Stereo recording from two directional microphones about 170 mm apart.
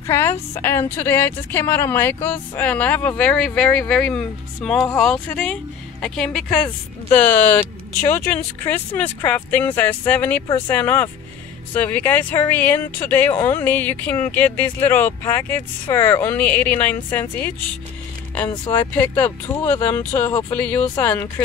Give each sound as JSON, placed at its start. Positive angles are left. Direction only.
{"t": 0.0, "sound": "speech", "side_deg": 15}
{"t": 18.7, "sound": "speech", "side_deg": 15}